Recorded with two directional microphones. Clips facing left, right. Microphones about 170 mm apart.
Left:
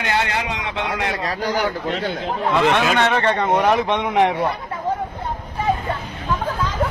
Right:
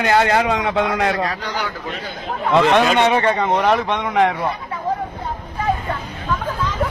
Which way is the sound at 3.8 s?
15° left (ahead or behind).